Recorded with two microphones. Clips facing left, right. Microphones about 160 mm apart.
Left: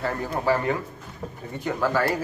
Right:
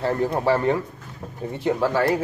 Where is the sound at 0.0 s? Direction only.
30° right (ahead or behind).